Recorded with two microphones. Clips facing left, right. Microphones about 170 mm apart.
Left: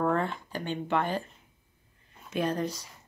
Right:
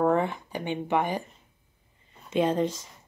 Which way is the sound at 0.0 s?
15° right (ahead or behind).